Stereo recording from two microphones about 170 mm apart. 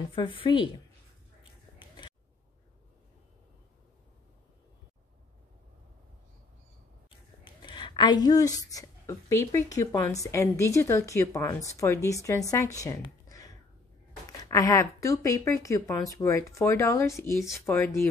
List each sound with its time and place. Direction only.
0.1 s speech: 30° left (ahead or behind)
1.8 s a sound: 30° left (ahead or behind)
7.1 s a woman's voice: 30° left (ahead or behind)
14.3 s speech: 20° left (ahead or behind)